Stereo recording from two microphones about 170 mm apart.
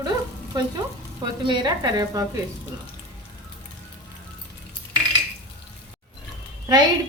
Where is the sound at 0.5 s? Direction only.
25° right (ahead or behind).